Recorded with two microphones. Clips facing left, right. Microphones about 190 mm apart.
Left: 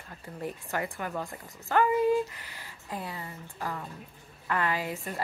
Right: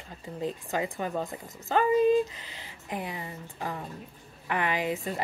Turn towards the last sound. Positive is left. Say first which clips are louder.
# right 3 dB
turn(degrees=-20)  # may be behind; listen again after turning